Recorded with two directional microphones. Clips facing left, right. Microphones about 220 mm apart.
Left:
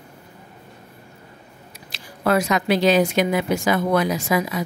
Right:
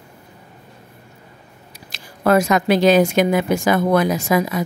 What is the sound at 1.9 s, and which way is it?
Speech, 45° right (ahead or behind).